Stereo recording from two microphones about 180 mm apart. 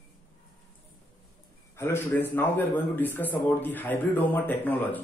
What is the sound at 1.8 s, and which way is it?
A man's voice, 15° left (ahead or behind).